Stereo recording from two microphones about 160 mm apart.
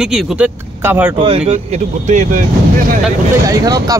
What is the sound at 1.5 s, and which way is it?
Speech, 50° right (ahead or behind).